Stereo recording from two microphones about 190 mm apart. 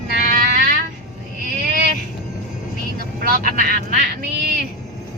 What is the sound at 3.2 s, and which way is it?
Speech, 50° right (ahead or behind).